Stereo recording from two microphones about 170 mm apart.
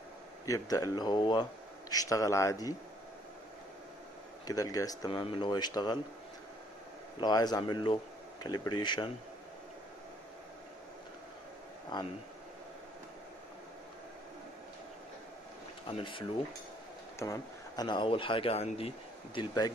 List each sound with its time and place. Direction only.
0.5 s speech: 20° left (ahead or behind)
4.5 s speech: 20° left (ahead or behind)
7.2 s speech: 25° left (ahead or behind)
15.9 s speech: 30° left (ahead or behind)